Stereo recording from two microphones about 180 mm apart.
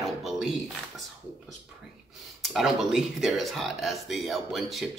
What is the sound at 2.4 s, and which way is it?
A man's voice, centre (ahead or behind).